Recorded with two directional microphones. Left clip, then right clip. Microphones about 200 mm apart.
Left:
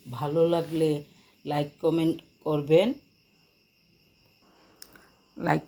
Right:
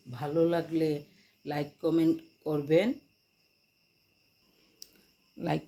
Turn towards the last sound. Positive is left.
turn(degrees=0)  # may be behind; listen again after turning